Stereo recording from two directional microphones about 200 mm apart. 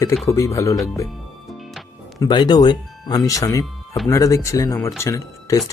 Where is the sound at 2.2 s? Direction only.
20° left (ahead or behind).